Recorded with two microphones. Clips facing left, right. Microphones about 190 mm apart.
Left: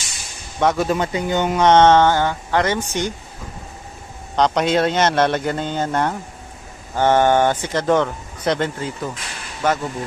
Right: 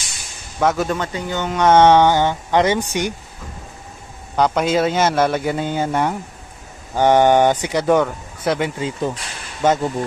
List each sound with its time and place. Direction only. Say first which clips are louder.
0.6 s speech: even; centre (ahead or behind)
0.8 s speech: left 3 dB; 15° left (ahead or behind)
1.6 s speech: right 1 dB; 10° right (ahead or behind)
4.4 s speech: even; 5° right (ahead or behind); by 9.8 s 25° right (ahead or behind)